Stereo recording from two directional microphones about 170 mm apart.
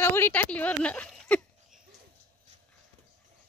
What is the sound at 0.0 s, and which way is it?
Speech, 10° left (ahead or behind).